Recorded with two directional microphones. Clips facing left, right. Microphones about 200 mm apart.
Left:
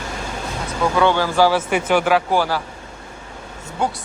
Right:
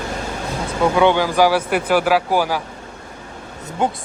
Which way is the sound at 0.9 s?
15° right (ahead or behind).